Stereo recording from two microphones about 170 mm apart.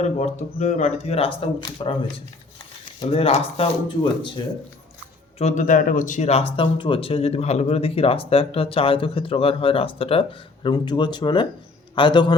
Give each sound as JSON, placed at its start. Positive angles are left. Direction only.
{"t": 0.3, "sound": "speech", "side_deg": 45}
{"t": 5.4, "sound": "a man's voice", "side_deg": 45}